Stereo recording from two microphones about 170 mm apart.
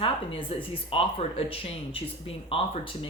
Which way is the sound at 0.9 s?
35° left (ahead or behind).